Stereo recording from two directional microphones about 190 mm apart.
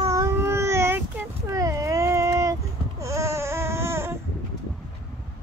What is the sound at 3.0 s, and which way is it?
Baby cry, 15° right (ahead or behind).